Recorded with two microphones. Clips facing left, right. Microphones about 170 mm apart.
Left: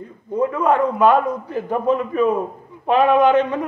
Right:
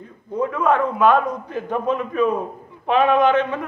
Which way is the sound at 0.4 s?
10° left (ahead or behind).